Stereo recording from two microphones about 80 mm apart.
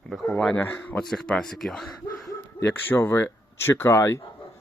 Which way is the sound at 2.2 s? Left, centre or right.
Left.